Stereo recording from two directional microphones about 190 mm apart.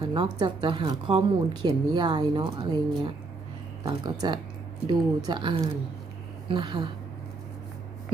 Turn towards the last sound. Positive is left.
turn(degrees=-25)  # may be behind; listen again after turning